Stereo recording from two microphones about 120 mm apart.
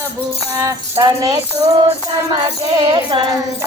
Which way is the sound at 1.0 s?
40° right (ahead or behind).